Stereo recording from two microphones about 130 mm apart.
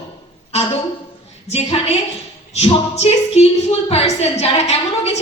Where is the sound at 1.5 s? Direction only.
50° left (ahead or behind).